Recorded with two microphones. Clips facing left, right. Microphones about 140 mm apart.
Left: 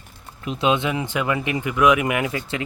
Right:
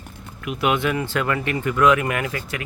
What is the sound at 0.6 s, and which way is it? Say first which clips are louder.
Speech: even; 20° left (ahead or behind).